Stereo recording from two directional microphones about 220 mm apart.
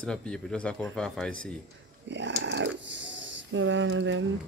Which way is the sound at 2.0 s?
55° right (ahead or behind).